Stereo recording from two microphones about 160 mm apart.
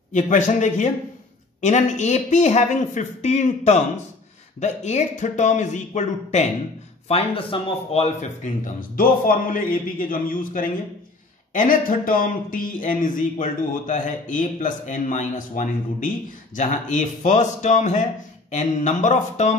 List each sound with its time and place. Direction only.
0.1 s speech: 50° left (ahead or behind)
7.1 s speech: 35° left (ahead or behind)
8.9 s speech: 60° left (ahead or behind)